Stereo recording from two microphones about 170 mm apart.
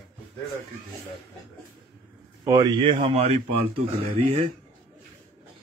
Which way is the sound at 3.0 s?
35° right (ahead or behind).